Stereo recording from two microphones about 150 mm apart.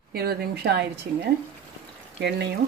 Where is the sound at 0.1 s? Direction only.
90° right.